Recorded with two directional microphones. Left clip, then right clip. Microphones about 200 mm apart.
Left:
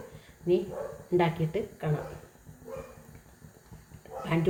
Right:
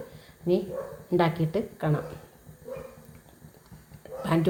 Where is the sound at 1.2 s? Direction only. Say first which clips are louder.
Right 4 dB; 30° right (ahead or behind).